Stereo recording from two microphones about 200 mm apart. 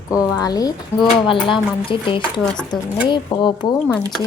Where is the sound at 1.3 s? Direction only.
25° left (ahead or behind).